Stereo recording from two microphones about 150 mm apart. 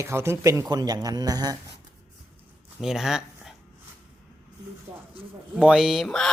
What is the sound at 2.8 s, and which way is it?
Speech, 5° right (ahead or behind).